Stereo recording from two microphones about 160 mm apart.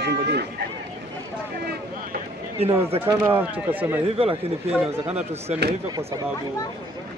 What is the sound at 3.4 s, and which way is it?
Speech, 10° right (ahead or behind).